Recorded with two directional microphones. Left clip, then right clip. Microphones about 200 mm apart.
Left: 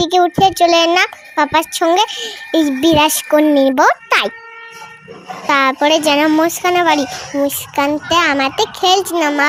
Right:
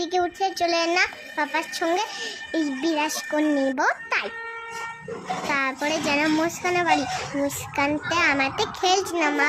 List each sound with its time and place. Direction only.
0.0 s a child's voice: 40° left (ahead or behind)
5.5 s a child's voice: 40° left (ahead or behind)